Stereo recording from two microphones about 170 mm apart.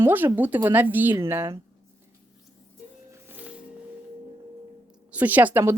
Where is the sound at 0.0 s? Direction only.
15° right (ahead or behind).